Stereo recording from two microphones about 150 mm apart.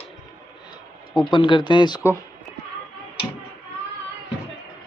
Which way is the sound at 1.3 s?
30° left (ahead or behind).